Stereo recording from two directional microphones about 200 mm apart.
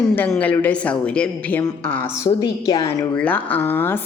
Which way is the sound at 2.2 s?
20° left (ahead or behind).